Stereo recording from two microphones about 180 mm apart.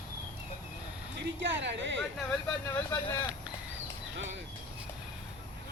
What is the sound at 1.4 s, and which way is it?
Speech, 85° right.